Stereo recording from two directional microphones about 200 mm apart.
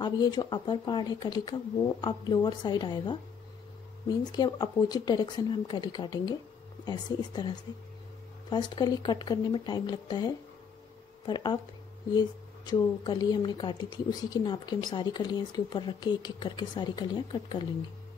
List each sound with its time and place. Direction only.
0.0 s speech: 20° left (ahead or behind)